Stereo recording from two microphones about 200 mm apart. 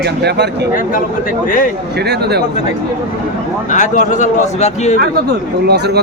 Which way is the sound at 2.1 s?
55° right (ahead or behind).